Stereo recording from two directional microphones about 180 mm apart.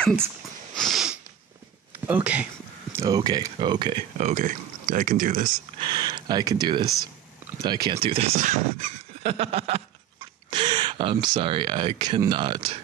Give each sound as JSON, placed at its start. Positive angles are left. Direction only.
{"t": 0.7, "sound": "sniff", "side_deg": 0}
{"t": 2.0, "sound": "speech", "side_deg": -10}
{"t": 4.2, "sound": "speech", "side_deg": -45}
{"t": 5.8, "sound": "speech", "side_deg": -25}
{"t": 7.9, "sound": "a sound", "side_deg": -35}
{"t": 10.5, "sound": "speech", "side_deg": -25}